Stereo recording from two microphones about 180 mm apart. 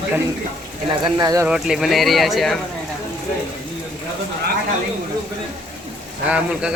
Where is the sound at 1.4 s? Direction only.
5° right (ahead or behind).